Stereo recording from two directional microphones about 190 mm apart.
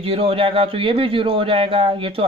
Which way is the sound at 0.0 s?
30° right (ahead or behind).